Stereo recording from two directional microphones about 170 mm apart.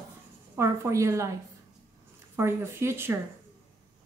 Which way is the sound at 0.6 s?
15° right (ahead or behind).